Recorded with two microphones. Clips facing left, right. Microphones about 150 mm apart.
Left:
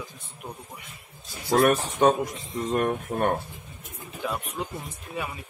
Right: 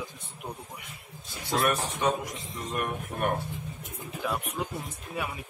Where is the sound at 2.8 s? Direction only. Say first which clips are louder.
Left 5 dB; 40° left (ahead or behind).